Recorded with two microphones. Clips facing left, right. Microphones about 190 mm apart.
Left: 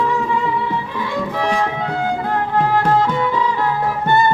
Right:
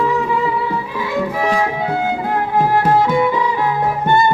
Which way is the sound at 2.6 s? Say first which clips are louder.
Right 2 dB; 10° right (ahead or behind).